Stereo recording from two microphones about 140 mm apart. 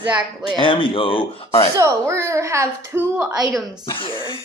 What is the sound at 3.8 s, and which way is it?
Speech, 40° left (ahead or behind).